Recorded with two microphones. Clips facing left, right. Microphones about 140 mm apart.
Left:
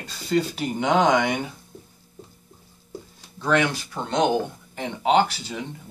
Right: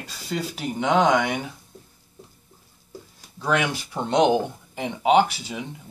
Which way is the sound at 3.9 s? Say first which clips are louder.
Right 4 dB; 15° right (ahead or behind).